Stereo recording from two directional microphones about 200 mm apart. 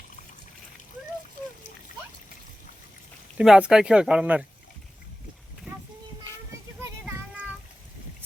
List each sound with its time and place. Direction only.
1.4 s splash: 40° left (ahead or behind)
3.3 s speech: 5° right (ahead or behind)